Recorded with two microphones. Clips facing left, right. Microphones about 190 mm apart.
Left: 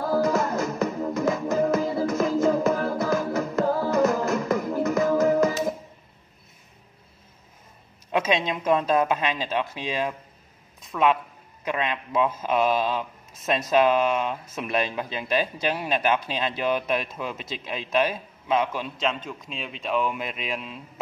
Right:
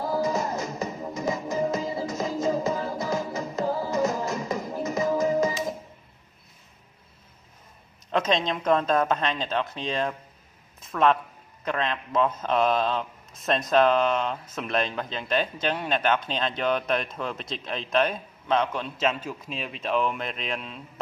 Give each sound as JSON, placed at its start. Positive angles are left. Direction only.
{"t": 0.0, "sound": "music", "side_deg": 55}
{"t": 8.1, "sound": "speech", "side_deg": 10}